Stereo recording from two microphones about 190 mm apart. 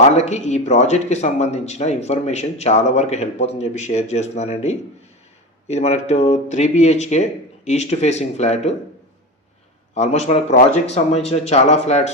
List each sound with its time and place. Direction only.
0.0 s speech: 35° left (ahead or behind)
9.9 s speech: 35° left (ahead or behind)